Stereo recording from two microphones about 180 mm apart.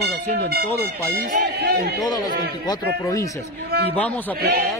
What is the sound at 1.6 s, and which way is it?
Speech, 60° right (ahead or behind).